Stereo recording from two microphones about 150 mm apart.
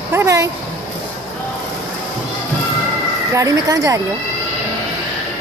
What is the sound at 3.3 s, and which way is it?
Speech, 20° right (ahead or behind).